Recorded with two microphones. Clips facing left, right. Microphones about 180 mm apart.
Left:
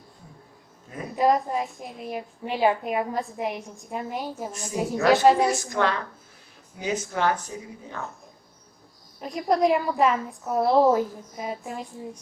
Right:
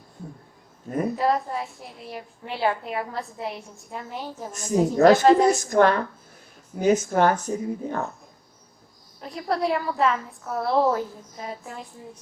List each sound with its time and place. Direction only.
1.1 s a woman's voice: 15° left (ahead or behind)
4.5 s speech: 45° right (ahead or behind)
9.2 s a woman's voice: 15° left (ahead or behind)